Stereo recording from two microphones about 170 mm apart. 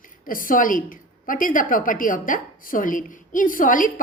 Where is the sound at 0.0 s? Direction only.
55° left (ahead or behind).